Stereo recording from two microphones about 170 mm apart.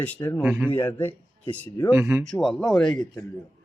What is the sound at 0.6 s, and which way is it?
Speech, 15° left (ahead or behind).